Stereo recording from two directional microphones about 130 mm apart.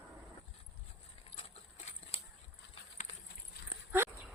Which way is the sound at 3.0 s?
65° left (ahead or behind).